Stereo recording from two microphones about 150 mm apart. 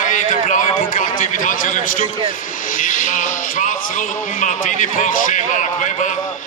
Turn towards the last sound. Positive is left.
turn(degrees=55)  # may be behind; listen again after turning